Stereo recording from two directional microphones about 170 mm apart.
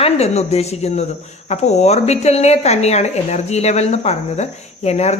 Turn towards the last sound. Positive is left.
turn(degrees=40)  # may be behind; listen again after turning